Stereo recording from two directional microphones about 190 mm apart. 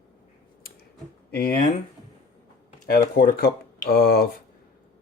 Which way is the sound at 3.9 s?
55° left (ahead or behind).